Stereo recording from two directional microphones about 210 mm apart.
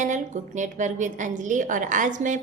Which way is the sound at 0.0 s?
35° right (ahead or behind).